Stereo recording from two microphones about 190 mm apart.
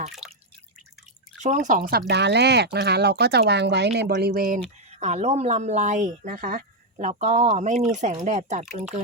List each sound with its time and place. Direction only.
0.1 s drip: centre (ahead or behind)
1.4 s speech: 40° right (ahead or behind)
4.9 s a woman's voice: 35° right (ahead or behind)